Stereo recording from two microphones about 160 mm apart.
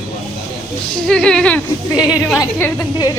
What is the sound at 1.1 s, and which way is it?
A woman's voice, 5° left (ahead or behind).